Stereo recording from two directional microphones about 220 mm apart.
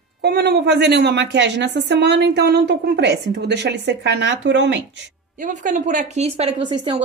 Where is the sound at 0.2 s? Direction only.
45° right (ahead or behind).